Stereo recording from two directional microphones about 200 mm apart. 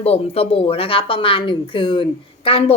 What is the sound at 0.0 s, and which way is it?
Speech, 30° left (ahead or behind).